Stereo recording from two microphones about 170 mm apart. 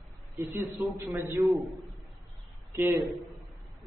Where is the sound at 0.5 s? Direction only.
15° right (ahead or behind).